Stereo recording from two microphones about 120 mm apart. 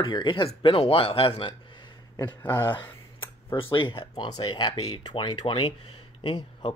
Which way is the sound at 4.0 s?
45° left (ahead or behind).